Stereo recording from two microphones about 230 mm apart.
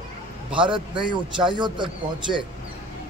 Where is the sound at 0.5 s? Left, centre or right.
Right.